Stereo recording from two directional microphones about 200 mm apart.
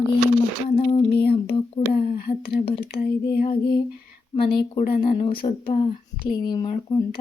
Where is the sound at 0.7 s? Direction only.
30° left (ahead or behind).